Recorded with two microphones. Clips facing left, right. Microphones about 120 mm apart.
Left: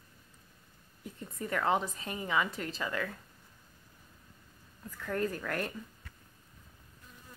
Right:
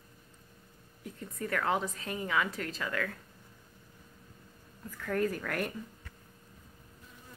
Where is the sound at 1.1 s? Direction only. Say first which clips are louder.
Right 2 dB; 20° left (ahead or behind).